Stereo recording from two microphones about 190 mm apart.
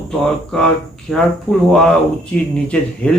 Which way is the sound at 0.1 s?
Centre (ahead or behind).